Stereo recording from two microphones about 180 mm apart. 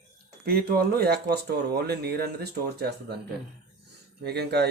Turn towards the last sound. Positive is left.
turn(degrees=-65)  # may be behind; listen again after turning